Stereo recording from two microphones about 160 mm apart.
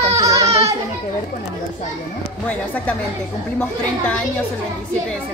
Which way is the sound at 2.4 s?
10° left (ahead or behind).